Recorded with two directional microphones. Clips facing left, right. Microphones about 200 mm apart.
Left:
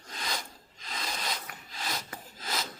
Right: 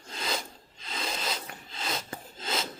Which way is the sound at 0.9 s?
25° right (ahead or behind).